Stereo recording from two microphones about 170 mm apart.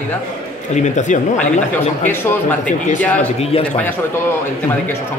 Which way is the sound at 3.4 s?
35° left (ahead or behind).